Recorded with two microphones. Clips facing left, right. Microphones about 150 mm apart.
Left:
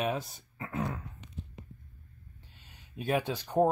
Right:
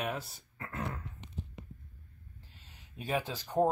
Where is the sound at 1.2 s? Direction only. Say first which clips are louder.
Right 1 dB; 25° right (ahead or behind).